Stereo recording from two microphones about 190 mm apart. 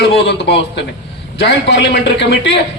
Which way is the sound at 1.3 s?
65° left (ahead or behind).